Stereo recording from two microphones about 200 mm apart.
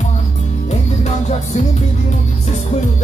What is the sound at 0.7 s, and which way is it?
Music, 35° left (ahead or behind).